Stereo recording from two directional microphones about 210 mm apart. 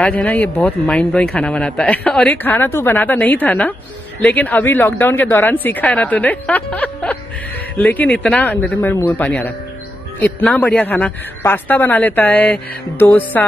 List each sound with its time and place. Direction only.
0.0 s speech: 5° left (ahead or behind)